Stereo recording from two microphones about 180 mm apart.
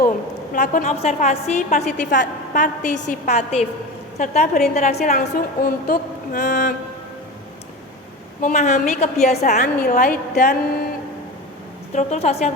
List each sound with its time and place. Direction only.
0.5 s a woman's voice: 45° left (ahead or behind)
5.3 s speech: 55° left (ahead or behind)
8.4 s a woman's voice: 40° left (ahead or behind)
10.0 s speech: 60° left (ahead or behind)
11.9 s a woman's voice: 40° left (ahead or behind)